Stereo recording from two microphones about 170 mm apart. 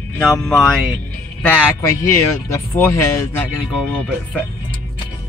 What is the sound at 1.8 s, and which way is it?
Speech, 20° left (ahead or behind).